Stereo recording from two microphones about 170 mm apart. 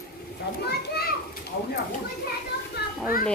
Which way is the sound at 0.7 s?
70° left (ahead or behind).